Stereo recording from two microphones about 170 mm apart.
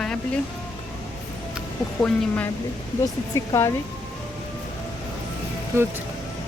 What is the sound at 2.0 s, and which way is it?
Speech, 10° left (ahead or behind).